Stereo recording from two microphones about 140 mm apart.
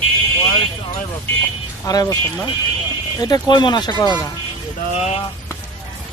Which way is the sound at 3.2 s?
30° left (ahead or behind).